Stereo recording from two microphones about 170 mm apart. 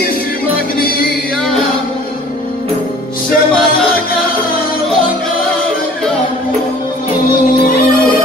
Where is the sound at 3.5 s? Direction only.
Centre (ahead or behind).